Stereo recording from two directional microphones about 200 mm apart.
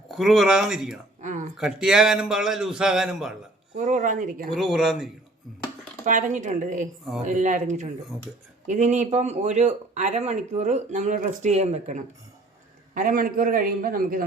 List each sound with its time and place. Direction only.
0.1 s a man's voice: centre (ahead or behind)
1.2 s speech: 40° right (ahead or behind)
1.5 s a man's voice: centre (ahead or behind)
3.8 s speech: 40° right (ahead or behind)
4.5 s a man's voice: centre (ahead or behind)
6.1 s a man's voice: 40° right (ahead or behind)